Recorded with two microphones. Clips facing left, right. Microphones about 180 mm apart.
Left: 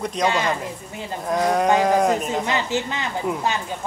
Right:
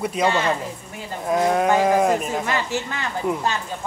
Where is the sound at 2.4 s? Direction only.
20° left (ahead or behind).